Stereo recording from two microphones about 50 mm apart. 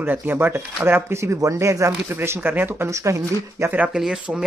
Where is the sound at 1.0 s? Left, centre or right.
Right.